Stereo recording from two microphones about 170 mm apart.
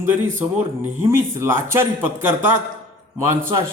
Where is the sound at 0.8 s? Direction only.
15° right (ahead or behind).